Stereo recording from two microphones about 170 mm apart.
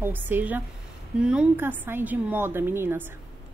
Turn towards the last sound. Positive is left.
turn(degrees=-15)  # may be behind; listen again after turning